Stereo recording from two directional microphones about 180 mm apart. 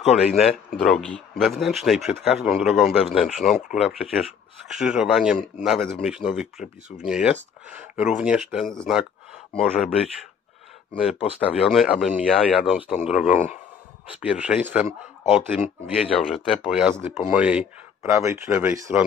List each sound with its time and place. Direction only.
0.4 s speech: centre (ahead or behind)
13.2 s a man's voice: 40° left (ahead or behind)
14.2 s speech: 5° right (ahead or behind)